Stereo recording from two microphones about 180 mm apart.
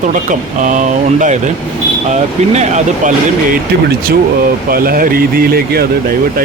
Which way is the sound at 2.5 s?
40° right (ahead or behind).